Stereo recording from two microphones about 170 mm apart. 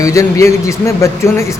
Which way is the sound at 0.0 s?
20° left (ahead or behind).